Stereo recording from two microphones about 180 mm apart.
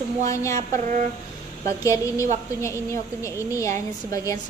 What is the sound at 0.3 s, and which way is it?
Speech, 15° left (ahead or behind).